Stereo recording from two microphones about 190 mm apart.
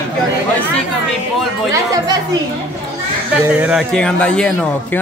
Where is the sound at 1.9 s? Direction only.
20° right (ahead or behind).